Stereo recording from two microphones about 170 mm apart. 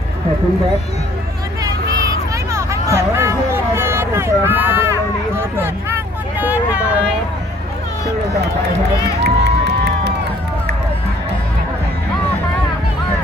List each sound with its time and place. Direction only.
1.6 s a sound: 20° right (ahead or behind)
6.4 s vehicle: 10° right (ahead or behind)
9.2 s crowd: 80° right